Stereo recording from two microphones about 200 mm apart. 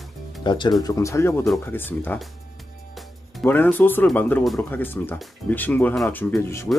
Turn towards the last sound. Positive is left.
turn(degrees=10)  # may be behind; listen again after turning